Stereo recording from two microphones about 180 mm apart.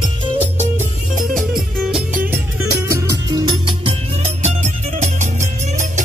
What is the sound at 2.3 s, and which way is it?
Music, 15° right (ahead or behind).